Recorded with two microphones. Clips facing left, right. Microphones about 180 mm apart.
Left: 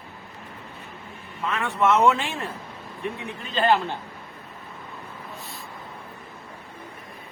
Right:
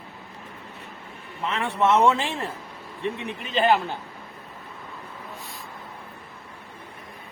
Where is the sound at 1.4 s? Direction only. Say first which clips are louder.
Even; 25° right (ahead or behind).